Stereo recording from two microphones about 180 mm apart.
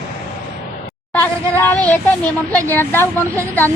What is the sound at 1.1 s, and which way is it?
A woman's voice, 10° left (ahead or behind).